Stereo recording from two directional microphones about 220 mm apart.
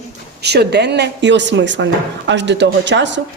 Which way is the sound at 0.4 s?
50° right (ahead or behind).